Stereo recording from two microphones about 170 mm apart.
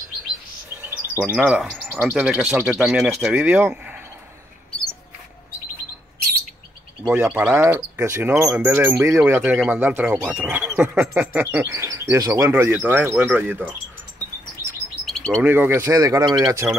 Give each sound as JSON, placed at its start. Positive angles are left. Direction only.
{"t": 0.8, "sound": "speech", "side_deg": -10}
{"t": 7.1, "sound": "speech", "side_deg": -10}
{"t": 15.0, "sound": "chirp", "side_deg": 5}
{"t": 15.4, "sound": "speech", "side_deg": -10}